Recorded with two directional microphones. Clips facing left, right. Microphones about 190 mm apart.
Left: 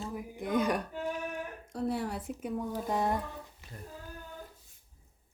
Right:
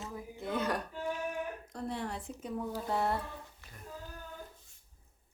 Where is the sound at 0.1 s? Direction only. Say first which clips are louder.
Left 5 dB; 15° left (ahead or behind).